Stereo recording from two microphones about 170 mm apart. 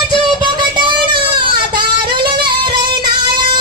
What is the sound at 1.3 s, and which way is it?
Music, 25° right (ahead or behind).